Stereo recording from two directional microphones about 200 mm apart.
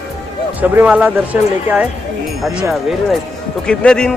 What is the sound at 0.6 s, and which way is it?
Speech, 10° right (ahead or behind).